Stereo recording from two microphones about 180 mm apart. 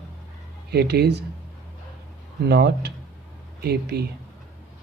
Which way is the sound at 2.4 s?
65° right (ahead or behind).